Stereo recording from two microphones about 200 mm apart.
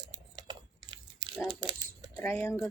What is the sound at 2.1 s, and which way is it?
Speech, 10° left (ahead or behind).